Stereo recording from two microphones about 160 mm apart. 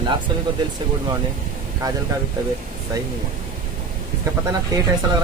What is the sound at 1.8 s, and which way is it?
Speech, 20° right (ahead or behind).